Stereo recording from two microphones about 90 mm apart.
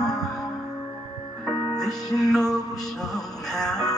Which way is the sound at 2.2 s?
5° left (ahead or behind).